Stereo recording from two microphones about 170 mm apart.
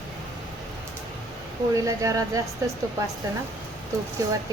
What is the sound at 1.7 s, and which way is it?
Speech, 20° right (ahead or behind).